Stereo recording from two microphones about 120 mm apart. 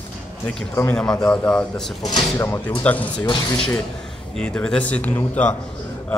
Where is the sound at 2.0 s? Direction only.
35° left (ahead or behind).